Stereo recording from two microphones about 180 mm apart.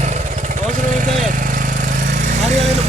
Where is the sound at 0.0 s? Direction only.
45° right (ahead or behind).